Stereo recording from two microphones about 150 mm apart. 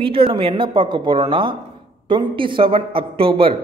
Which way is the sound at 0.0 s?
35° right (ahead or behind).